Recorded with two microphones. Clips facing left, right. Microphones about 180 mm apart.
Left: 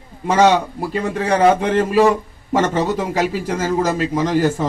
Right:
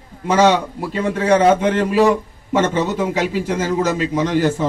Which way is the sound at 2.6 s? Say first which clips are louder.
Right 1 dB; 40° left (ahead or behind).